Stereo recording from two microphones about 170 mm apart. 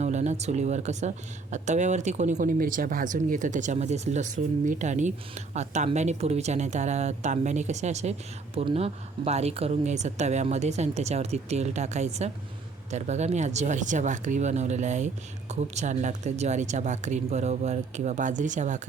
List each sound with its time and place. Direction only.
0.0 s speech: 45° right (ahead or behind)